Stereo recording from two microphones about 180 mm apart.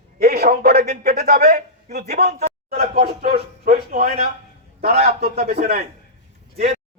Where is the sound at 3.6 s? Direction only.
55° right (ahead or behind).